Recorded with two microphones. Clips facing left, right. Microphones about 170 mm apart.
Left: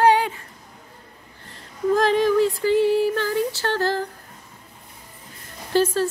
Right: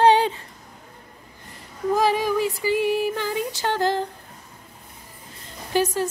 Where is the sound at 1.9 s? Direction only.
10° right (ahead or behind).